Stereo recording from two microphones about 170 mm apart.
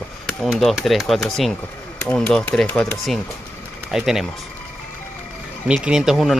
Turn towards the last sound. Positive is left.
turn(degrees=0)  # may be behind; listen again after turning